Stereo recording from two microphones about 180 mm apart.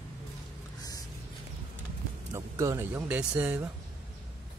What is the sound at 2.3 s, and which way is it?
Speech, 15° right (ahead or behind).